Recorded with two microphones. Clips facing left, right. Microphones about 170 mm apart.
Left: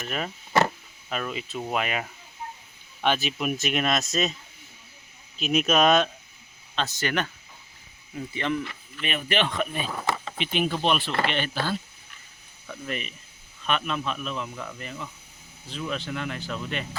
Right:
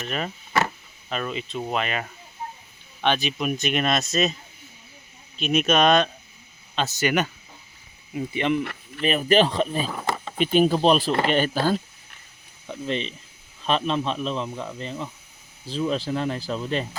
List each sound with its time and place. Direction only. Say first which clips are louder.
0.0 s speech: right 2 dB; centre (ahead or behind)
5.4 s speech: right 2 dB; centre (ahead or behind)
6.7 s speech: right 4 dB; 10° right (ahead or behind)
9.0 s speech: right 8 dB; 35° right (ahead or behind)
9.9 s a sound: right 1 dB; 5° right (ahead or behind)
10.3 s speech: right 11 dB; 45° right (ahead or behind)
12.6 s speech: right 6 dB; 20° right (ahead or behind)